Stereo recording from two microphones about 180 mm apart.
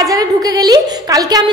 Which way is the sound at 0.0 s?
20° right (ahead or behind).